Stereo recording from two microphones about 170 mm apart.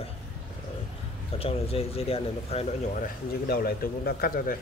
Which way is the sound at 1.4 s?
35° left (ahead or behind).